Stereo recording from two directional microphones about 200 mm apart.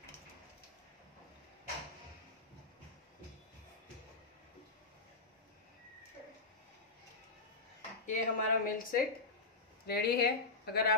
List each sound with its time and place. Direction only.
8.1 s speech: 45° left (ahead or behind)